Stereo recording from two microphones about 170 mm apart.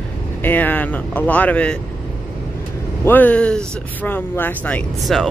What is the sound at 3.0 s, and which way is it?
Speech, 10° left (ahead or behind).